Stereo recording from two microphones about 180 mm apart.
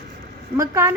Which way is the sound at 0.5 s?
15° right (ahead or behind).